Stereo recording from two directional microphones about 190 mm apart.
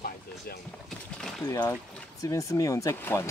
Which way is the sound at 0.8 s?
Centre (ahead or behind).